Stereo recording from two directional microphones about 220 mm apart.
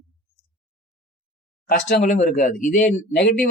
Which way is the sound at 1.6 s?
40° left (ahead or behind).